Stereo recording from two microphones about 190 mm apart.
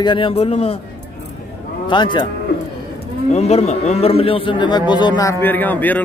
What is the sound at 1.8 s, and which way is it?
Speech, 25° left (ahead or behind).